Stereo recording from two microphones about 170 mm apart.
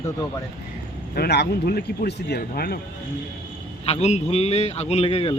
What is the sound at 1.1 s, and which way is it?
Speech, 70° left (ahead or behind).